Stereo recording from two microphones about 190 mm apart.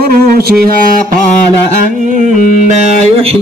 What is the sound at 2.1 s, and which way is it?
Music, 40° right (ahead or behind).